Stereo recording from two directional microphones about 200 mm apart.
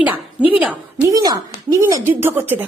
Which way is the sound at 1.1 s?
15° right (ahead or behind).